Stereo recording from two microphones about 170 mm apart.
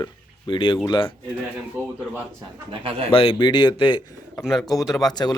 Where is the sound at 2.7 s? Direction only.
35° right (ahead or behind).